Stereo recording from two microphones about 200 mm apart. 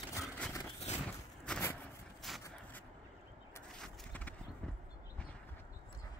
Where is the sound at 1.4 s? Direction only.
10° left (ahead or behind).